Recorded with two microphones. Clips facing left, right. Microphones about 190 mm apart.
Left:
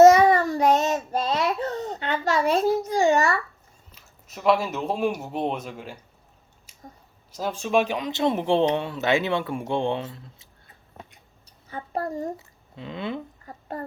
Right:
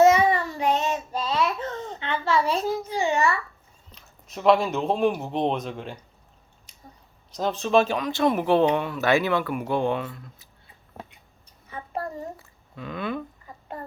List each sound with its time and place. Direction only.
0.0 s child singing: 40° left (ahead or behind)
3.9 s speech: 5° left (ahead or behind)
6.7 s a sound: 5° left (ahead or behind)
7.3 s speech: 5° left (ahead or behind); by 10.5 s 25° left (ahead or behind)
11.7 s a sound: 35° left (ahead or behind)
12.4 s speech: 25° left (ahead or behind)